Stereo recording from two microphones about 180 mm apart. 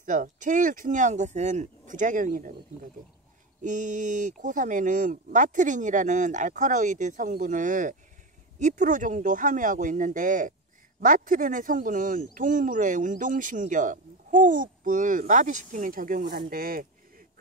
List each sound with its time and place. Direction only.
0.0 s speech: 45° right (ahead or behind)
3.6 s speech: 45° right (ahead or behind)